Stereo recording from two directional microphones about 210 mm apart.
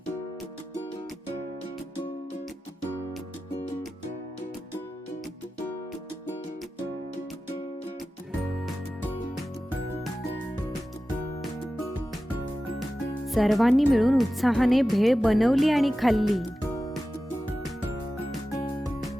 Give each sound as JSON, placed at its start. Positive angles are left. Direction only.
{"t": 9.3, "sound": "music", "side_deg": 0}
{"t": 13.2, "sound": "speech", "side_deg": 0}